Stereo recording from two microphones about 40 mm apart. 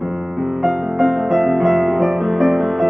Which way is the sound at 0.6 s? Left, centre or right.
Centre.